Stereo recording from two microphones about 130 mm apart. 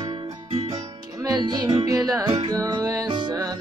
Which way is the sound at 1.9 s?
25° right (ahead or behind).